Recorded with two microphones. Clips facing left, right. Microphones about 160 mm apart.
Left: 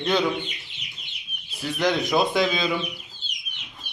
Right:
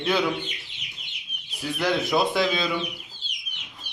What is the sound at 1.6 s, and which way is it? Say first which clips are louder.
A man's voice: left 1 dB; 10° right (ahead or behind).